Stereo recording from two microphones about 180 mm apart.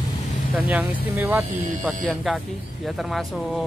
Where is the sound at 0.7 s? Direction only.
10° right (ahead or behind).